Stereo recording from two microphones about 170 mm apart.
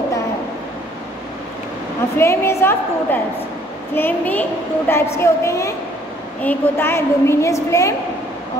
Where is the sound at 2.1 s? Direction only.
15° left (ahead or behind).